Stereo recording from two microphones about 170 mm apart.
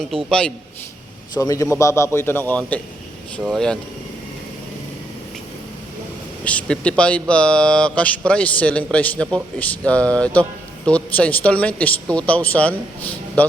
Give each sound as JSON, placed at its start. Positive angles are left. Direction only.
{"t": 0.1, "sound": "a man's voice", "side_deg": 5}
{"t": 1.4, "sound": "a man's voice", "side_deg": 20}
{"t": 6.4, "sound": "speech", "side_deg": 10}